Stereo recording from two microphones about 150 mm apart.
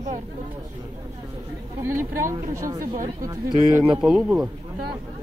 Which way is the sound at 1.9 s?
20° right (ahead or behind).